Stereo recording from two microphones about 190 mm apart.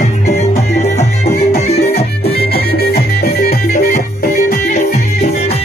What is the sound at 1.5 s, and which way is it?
Music, 35° left (ahead or behind).